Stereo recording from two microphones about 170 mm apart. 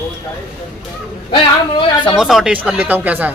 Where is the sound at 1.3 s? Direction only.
25° left (ahead or behind).